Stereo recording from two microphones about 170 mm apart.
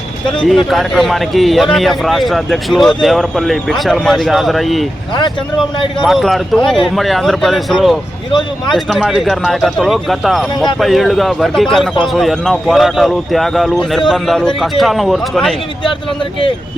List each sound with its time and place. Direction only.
0.4 s a man's voice: centre (ahead or behind)
6.0 s a man's voice: centre (ahead or behind)
8.3 s speech: 25° left (ahead or behind)
8.7 s a man's voice: centre (ahead or behind)
10.5 s speech: 25° left (ahead or behind)
10.8 s a man's voice: centre (ahead or behind)